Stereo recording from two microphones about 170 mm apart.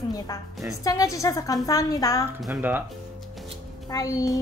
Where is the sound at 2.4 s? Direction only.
10° right (ahead or behind).